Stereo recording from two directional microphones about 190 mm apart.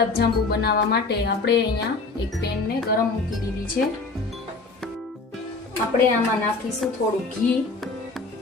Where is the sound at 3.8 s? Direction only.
55° left (ahead or behind).